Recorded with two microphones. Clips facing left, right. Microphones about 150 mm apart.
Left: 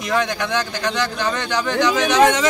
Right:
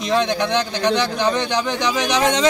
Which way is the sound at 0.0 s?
20° right (ahead or behind).